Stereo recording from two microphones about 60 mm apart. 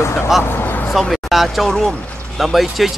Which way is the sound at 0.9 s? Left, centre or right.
Centre.